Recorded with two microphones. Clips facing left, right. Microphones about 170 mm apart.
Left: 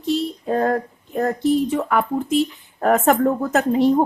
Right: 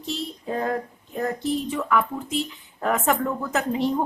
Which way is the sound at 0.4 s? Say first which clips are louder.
Left 5 dB; 55° left (ahead or behind).